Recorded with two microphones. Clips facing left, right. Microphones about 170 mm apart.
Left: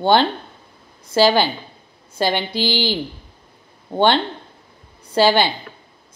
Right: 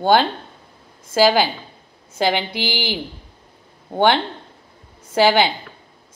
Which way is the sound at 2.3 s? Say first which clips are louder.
Left 1 dB; 15° right (ahead or behind).